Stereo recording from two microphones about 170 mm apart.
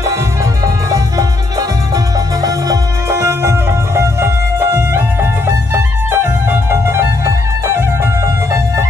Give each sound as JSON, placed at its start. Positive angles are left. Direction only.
{"t": 0.8, "sound": "music", "side_deg": -20}